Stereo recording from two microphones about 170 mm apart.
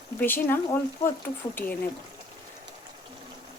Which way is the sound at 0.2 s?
10° left (ahead or behind).